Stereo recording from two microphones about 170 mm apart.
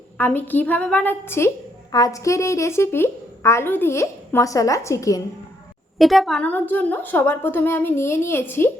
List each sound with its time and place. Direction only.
0.2 s a woman's voice: 10° left (ahead or behind)
6.0 s a woman's voice: centre (ahead or behind)